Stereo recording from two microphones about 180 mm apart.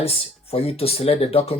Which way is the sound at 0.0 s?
35° left (ahead or behind).